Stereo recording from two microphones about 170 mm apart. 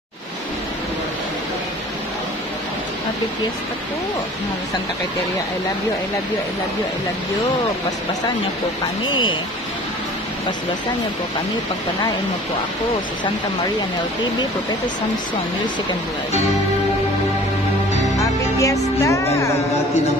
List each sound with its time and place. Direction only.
9.1 s music: 30° left (ahead or behind)
18.6 s music: 20° left (ahead or behind)